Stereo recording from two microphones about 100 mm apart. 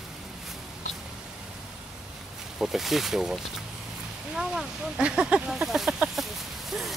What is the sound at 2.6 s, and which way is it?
Speech, centre (ahead or behind).